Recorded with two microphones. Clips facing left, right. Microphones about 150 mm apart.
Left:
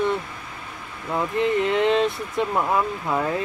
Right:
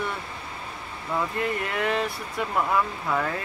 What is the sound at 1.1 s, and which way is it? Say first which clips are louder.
Speech: left 5 dB; 20° left (ahead or behind).